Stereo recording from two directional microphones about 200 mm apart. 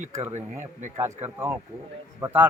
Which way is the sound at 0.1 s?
15° right (ahead or behind).